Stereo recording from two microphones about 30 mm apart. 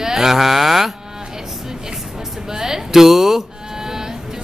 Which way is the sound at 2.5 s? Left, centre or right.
Centre.